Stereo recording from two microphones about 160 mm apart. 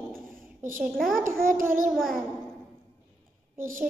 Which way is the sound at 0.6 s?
55° right (ahead or behind).